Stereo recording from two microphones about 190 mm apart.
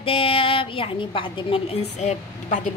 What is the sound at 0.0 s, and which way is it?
A woman's voice, 30° left (ahead or behind).